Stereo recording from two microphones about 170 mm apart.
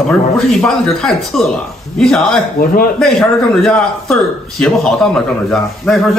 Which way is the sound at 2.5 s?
55° left (ahead or behind).